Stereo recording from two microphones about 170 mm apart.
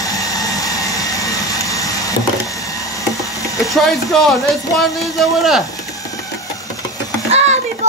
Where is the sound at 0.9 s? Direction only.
20° left (ahead or behind).